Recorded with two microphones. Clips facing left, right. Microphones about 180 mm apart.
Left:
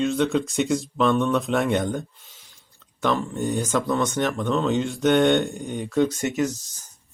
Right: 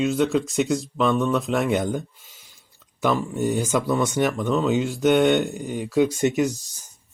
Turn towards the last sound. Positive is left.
turn(degrees=-15)  # may be behind; listen again after turning